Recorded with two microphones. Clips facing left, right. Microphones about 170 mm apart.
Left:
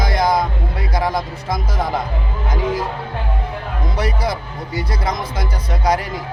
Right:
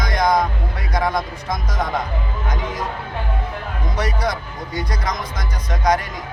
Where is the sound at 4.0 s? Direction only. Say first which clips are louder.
Left 1 dB; 30° left (ahead or behind).